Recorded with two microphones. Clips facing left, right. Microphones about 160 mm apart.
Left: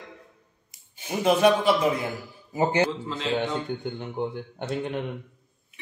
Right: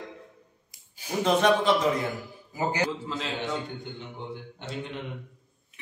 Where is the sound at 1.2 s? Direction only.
10° left (ahead or behind).